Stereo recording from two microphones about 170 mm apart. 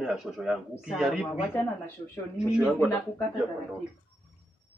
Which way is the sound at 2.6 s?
5° right (ahead or behind).